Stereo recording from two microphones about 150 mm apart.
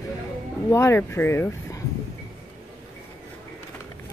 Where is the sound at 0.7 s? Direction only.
20° left (ahead or behind).